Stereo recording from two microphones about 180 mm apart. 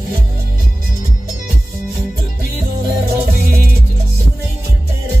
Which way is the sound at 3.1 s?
55° right (ahead or behind).